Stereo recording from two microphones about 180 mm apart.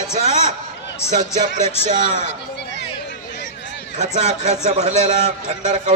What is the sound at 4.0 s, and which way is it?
A man's voice, 40° right (ahead or behind).